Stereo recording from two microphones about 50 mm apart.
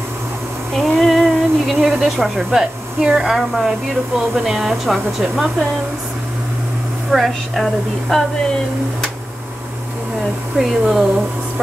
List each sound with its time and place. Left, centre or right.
0.7 s a sound: centre
3.0 s speech: centre
3.3 s a woman's voice: centre
7.1 s a woman's voice: centre
10.6 s a woman's voice: centre